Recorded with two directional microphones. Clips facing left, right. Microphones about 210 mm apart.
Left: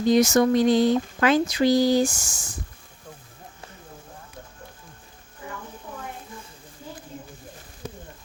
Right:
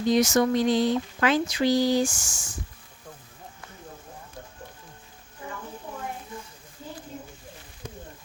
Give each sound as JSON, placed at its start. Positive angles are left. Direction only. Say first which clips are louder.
{"t": 0.1, "sound": "speech", "louder": "left 3 dB", "side_deg": 45}